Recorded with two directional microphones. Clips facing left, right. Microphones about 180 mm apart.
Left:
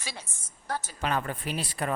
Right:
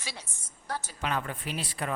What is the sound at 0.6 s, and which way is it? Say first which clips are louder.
A woman's voice: left 2 dB; 45° left (ahead or behind).